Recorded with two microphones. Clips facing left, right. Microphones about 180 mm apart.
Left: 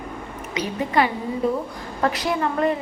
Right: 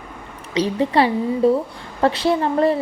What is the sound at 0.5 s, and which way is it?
A woman's voice, 30° right (ahead or behind).